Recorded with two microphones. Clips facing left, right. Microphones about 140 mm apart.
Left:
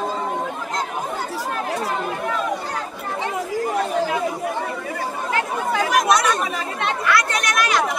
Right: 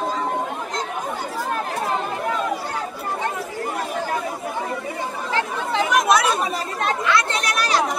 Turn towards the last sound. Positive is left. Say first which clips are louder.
# left 1 dB
turn(degrees=-35)  # may be behind; listen again after turning